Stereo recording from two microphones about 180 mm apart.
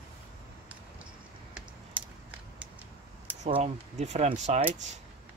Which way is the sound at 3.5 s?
40° right (ahead or behind).